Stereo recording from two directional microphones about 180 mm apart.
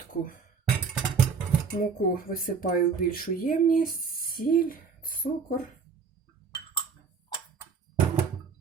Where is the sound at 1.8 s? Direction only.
50° left (ahead or behind).